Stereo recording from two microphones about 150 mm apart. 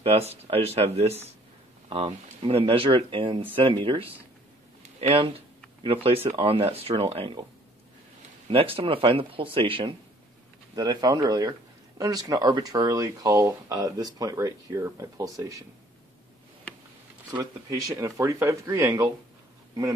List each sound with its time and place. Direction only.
0.0 s speech: 40° right (ahead or behind)
4.8 s a sound: 40° right (ahead or behind)
6.3 s speech: 35° right (ahead or behind)
8.5 s speech: 40° right (ahead or behind); by 15.6 s 20° right (ahead or behind)
17.3 s speech: 25° right (ahead or behind)